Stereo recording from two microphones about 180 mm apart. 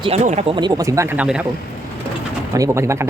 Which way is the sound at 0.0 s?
35° right (ahead or behind).